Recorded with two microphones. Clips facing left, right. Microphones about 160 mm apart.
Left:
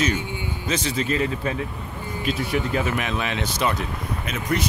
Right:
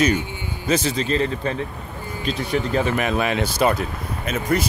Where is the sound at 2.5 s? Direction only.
35° right (ahead or behind).